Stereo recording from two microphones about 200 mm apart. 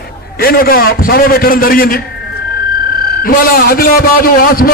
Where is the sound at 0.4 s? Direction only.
50° left (ahead or behind).